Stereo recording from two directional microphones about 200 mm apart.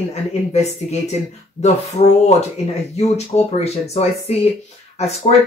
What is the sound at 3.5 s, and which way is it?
Speech, 35° left (ahead or behind).